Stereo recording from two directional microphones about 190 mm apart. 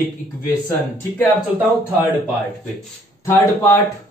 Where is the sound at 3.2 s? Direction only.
15° left (ahead or behind).